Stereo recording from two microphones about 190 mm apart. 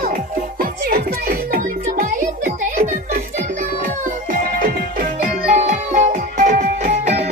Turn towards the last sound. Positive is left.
turn(degrees=-35)  # may be behind; listen again after turning